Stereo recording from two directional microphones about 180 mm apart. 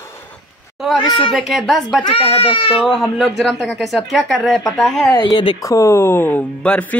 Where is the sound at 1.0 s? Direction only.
25° left (ahead or behind).